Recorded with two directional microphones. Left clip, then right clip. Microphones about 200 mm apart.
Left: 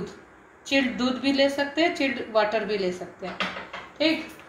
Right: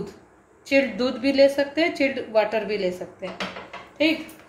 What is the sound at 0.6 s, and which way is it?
Speech, 35° right (ahead or behind).